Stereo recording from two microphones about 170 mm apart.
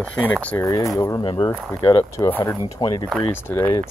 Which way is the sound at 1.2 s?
30° left (ahead or behind).